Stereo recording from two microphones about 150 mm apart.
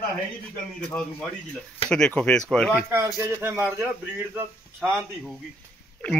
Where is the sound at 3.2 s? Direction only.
15° right (ahead or behind).